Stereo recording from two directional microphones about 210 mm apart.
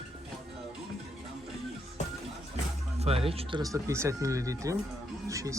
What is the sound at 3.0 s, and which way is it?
Speech, 30° right (ahead or behind).